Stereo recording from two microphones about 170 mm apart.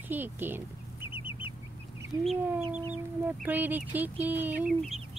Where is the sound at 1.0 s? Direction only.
30° left (ahead or behind).